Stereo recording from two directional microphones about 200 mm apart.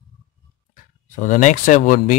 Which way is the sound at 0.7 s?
40° left (ahead or behind).